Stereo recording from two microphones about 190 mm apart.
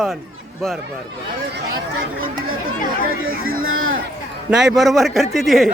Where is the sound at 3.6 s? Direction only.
90° right.